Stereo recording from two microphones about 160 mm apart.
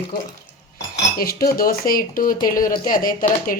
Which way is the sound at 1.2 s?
65° left (ahead or behind).